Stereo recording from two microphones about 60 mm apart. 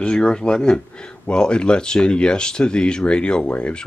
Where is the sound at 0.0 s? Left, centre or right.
Centre.